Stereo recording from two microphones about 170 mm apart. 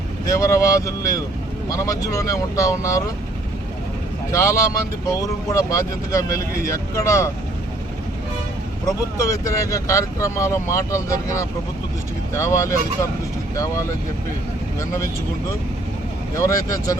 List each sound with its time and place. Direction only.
0.3 s speech: 20° left (ahead or behind)
4.3 s speech: 15° left (ahead or behind)
9.1 s speech: 20° left (ahead or behind)
16.3 s speech: 20° left (ahead or behind)